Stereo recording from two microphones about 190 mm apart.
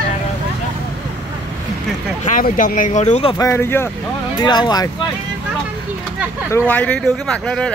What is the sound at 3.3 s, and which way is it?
Speech, 15° left (ahead or behind).